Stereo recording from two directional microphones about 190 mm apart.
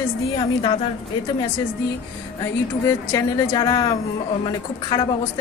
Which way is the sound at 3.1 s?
20° left (ahead or behind).